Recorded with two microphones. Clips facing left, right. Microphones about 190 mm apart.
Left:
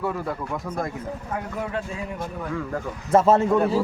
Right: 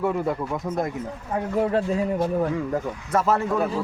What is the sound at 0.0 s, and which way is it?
Speech, 20° right (ahead or behind).